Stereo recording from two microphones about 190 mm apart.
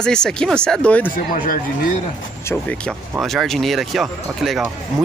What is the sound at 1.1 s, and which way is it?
Speech, 45° left (ahead or behind).